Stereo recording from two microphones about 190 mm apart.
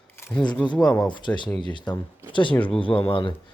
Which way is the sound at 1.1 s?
25° left (ahead or behind).